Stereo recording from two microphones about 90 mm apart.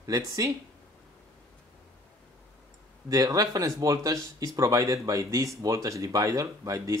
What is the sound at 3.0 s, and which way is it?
Speech, 40° right (ahead or behind).